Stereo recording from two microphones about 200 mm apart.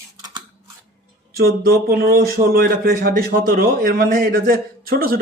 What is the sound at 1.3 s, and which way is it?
A man's voice, 50° right (ahead or behind).